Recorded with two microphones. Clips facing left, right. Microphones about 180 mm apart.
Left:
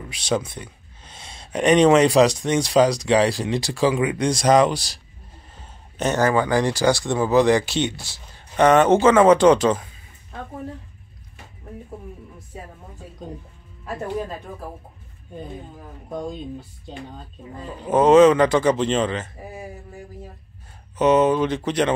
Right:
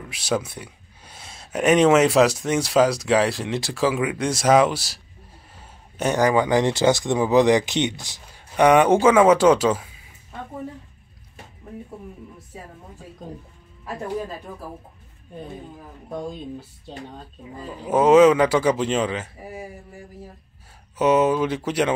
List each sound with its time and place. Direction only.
0.1 s speech: 5° right (ahead or behind)
16.1 s speech: 5° right (ahead or behind)
21.0 s speech: 5° right (ahead or behind)